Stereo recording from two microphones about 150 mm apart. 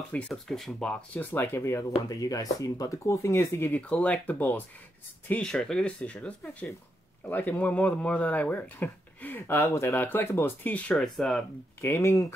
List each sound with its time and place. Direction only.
0.1 s speech: centre (ahead or behind)
11.8 s speech: 20° left (ahead or behind)